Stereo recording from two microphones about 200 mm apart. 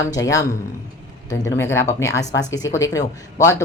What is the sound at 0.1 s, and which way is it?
Speech, 15° left (ahead or behind).